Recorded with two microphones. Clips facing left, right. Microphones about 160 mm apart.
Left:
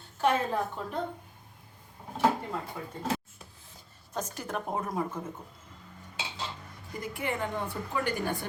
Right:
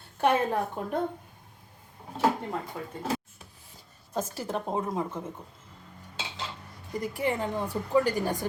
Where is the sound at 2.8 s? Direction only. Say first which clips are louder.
Right 2 dB; 50° right (ahead or behind).